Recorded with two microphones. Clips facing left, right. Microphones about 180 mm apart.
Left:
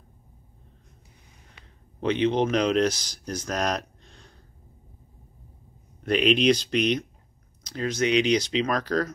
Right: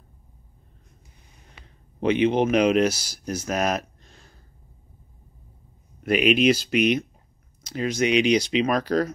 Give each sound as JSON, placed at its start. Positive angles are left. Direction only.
{"t": 2.0, "sound": "speech", "side_deg": -10}
{"t": 6.0, "sound": "speech", "side_deg": -5}